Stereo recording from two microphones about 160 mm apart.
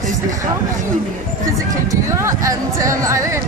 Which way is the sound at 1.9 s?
20° right (ahead or behind).